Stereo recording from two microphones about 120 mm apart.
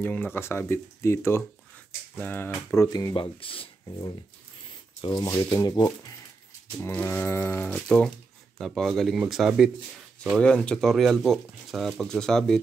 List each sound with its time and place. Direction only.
0.0 s speech: 15° left (ahead or behind)
2.1 s a sound: 15° left (ahead or behind)
2.9 s speech: 30° left (ahead or behind)
3.2 s speech: 50° left (ahead or behind)
5.0 s speech: 30° left (ahead or behind)
6.8 s a sound: 15° left (ahead or behind)
8.5 s speech: centre (ahead or behind)